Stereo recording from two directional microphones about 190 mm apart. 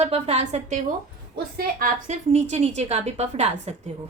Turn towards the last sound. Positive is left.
turn(degrees=-35)  # may be behind; listen again after turning